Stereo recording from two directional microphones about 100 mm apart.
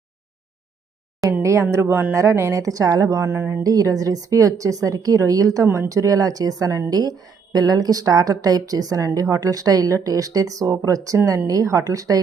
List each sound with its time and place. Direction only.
1.3 s a sound: 30° right (ahead or behind)
1.7 s a woman's voice: 25° right (ahead or behind)
5.6 s speech: 20° right (ahead or behind)
5.9 s a woman's voice: 35° right (ahead or behind)
11.2 s speech: 25° right (ahead or behind)
11.4 s a woman's voice: 35° right (ahead or behind)